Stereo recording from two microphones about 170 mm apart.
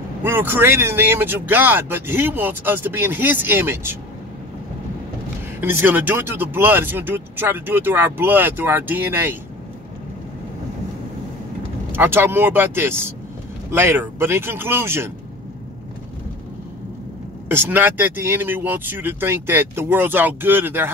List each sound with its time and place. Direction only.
0.2 s speech: 10° right (ahead or behind)
5.6 s speech: 10° right (ahead or behind)
11.9 s speech: 15° right (ahead or behind)
17.5 s speech: 10° right (ahead or behind)